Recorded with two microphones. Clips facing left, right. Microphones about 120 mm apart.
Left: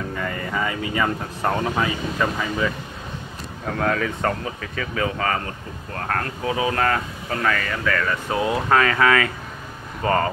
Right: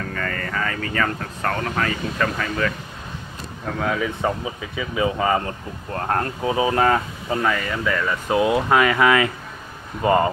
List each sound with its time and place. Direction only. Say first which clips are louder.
0.1 s speech: left 1 dB; 15° left (ahead or behind)
3.7 s speech: left 1 dB; 5° right (ahead or behind)